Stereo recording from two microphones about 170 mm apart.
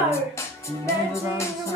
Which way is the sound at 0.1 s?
15° left (ahead or behind).